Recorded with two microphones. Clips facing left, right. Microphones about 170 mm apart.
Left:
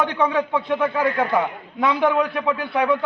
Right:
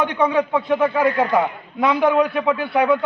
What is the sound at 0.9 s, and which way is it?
A man's voice, 20° right (ahead or behind).